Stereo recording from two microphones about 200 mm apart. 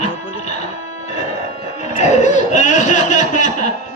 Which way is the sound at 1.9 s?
35° left (ahead or behind).